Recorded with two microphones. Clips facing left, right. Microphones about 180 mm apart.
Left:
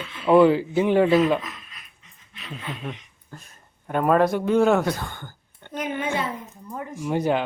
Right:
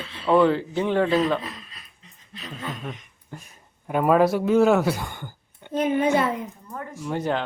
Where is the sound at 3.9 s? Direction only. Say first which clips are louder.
Right 1 dB; 5° right (ahead or behind).